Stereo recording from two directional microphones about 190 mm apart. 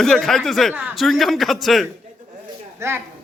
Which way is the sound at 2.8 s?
15° right (ahead or behind).